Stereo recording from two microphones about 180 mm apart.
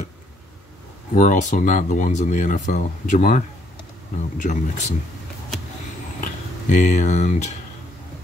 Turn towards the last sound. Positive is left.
turn(degrees=40)  # may be behind; listen again after turning